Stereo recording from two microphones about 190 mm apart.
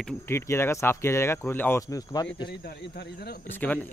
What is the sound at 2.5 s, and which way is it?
Speech, 60° left (ahead or behind).